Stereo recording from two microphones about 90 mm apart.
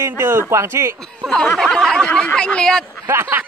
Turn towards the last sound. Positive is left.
turn(degrees=-25)  # may be behind; listen again after turning